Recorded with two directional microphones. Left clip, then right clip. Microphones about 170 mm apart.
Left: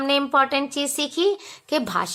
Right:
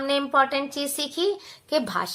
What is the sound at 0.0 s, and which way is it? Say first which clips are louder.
A woman's voice: left 2 dB; 35° left (ahead or behind).